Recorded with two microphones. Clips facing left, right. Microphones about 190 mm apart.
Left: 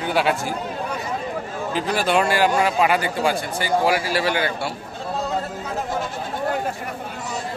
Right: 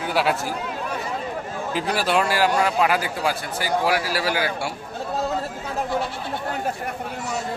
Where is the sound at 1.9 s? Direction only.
Centre (ahead or behind).